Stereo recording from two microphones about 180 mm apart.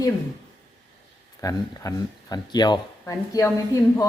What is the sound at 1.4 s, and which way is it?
Speech, 20° left (ahead or behind).